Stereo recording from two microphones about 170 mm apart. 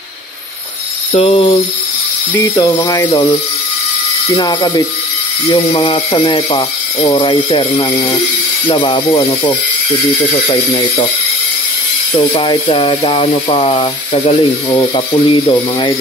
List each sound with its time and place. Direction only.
1.1 s speech: 35° left (ahead or behind)
2.3 s speech: 20° left (ahead or behind)
4.4 s speech: 25° left (ahead or behind)
12.4 s speech: 30° left (ahead or behind)